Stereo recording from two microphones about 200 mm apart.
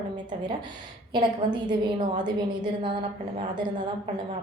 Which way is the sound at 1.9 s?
25° right (ahead or behind).